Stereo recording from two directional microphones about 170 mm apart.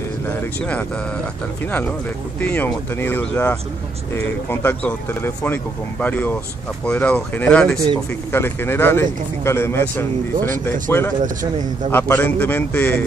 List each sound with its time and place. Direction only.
0.3 s speech: 10° left (ahead or behind)
11.2 s speech: 50° right (ahead or behind)
11.9 s speech: 10° left (ahead or behind)